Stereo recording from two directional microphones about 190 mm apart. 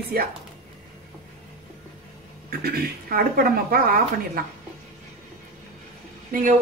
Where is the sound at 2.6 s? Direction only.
50° right (ahead or behind).